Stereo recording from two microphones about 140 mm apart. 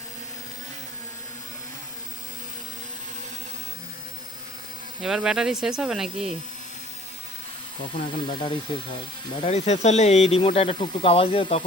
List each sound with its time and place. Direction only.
5.0 s speech: 5° right (ahead or behind)
7.9 s speech: 90° left
9.4 s speech: 50° left (ahead or behind)